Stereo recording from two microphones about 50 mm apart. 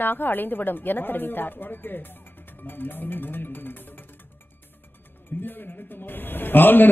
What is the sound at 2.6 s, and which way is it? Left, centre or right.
Music, left.